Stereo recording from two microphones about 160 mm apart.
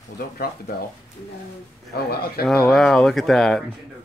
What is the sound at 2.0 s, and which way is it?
Speech, 75° left (ahead or behind).